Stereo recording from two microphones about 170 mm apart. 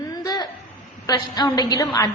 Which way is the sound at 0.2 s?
25° left (ahead or behind).